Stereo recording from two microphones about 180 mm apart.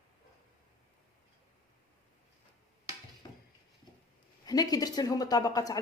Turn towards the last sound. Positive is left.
turn(degrees=20)  # may be behind; listen again after turning